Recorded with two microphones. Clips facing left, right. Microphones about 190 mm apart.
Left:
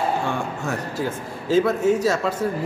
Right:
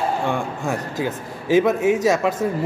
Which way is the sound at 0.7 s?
15° right (ahead or behind).